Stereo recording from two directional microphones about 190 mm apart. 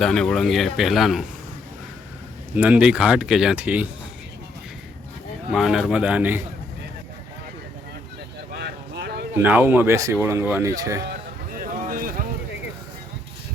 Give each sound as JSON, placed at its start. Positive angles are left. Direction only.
{"t": 0.0, "sound": "speech", "side_deg": 5}
{"t": 2.6, "sound": "speech", "side_deg": -5}
{"t": 5.5, "sound": "speech", "side_deg": 0}
{"t": 8.5, "sound": "vehicle", "side_deg": -60}
{"t": 9.3, "sound": "speech", "side_deg": -10}
{"t": 11.9, "sound": "vehicle", "side_deg": -50}